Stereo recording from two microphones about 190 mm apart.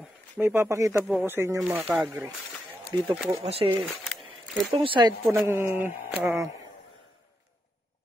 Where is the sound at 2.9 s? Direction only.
25° right (ahead or behind).